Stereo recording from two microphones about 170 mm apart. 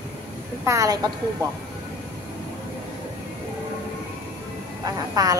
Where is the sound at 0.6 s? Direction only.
20° right (ahead or behind).